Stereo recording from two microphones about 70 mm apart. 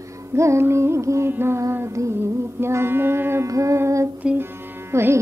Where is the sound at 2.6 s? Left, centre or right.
Right.